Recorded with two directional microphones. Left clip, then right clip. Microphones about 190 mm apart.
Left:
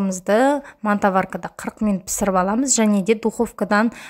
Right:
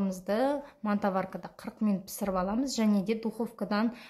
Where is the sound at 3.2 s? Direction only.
40° left (ahead or behind).